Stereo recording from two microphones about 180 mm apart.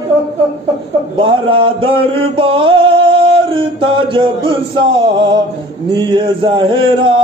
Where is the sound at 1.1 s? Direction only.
30° right (ahead or behind).